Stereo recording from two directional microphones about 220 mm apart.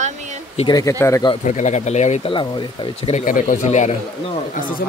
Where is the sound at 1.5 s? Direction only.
30° left (ahead or behind).